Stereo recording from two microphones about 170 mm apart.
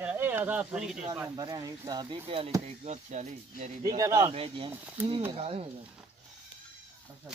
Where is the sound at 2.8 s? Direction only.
40° right (ahead or behind).